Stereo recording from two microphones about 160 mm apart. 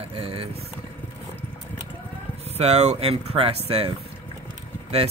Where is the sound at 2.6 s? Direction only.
45° right (ahead or behind).